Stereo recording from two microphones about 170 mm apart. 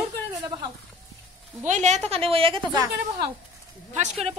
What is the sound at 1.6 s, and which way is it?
Speech, 45° right (ahead or behind).